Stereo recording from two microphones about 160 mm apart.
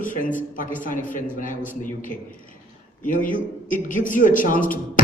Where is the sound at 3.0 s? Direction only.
55° left (ahead or behind).